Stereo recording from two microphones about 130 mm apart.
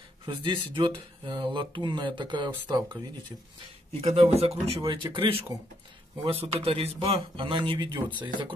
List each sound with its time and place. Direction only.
0.2 s speech: 40° right (ahead or behind)
4.0 s speech: 60° right (ahead or behind); by 8.5 s 35° right (ahead or behind)